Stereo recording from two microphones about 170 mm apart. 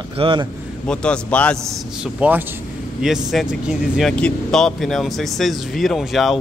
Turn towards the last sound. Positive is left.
turn(degrees=0)  # may be behind; listen again after turning